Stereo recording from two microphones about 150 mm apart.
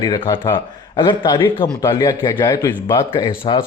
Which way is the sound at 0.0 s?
30° left (ahead or behind).